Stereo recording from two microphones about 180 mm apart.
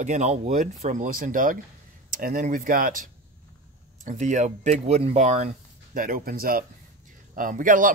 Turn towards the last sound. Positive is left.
turn(degrees=-45)  # may be behind; listen again after turning